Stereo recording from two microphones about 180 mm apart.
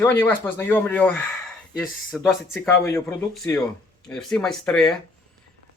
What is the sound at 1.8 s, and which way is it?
Speech, centre (ahead or behind).